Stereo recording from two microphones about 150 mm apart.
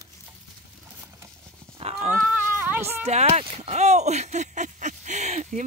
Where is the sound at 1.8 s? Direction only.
40° right (ahead or behind).